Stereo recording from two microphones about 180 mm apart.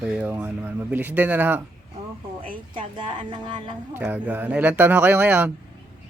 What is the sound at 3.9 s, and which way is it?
Speech, 10° right (ahead or behind).